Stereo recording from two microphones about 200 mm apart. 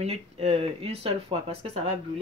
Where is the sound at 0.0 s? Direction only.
30° right (ahead or behind).